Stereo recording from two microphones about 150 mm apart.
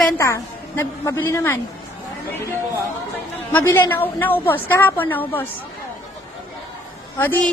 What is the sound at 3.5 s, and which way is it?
A woman's voice, 15° left (ahead or behind).